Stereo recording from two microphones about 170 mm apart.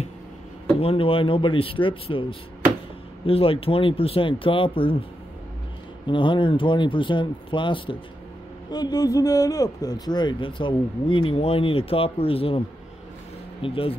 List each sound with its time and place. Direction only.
0.7 s speech: 35° left (ahead or behind)
3.3 s speech: 35° left (ahead or behind)
6.0 s a man's voice: 30° left (ahead or behind)